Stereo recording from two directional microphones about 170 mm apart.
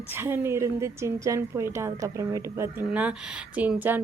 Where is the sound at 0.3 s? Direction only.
15° right (ahead or behind).